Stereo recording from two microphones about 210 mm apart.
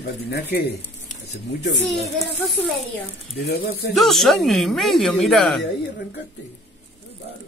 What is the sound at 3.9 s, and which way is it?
Speech, centre (ahead or behind).